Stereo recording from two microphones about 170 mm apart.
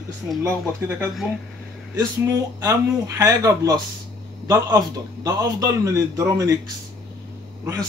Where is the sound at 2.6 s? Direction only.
20° right (ahead or behind).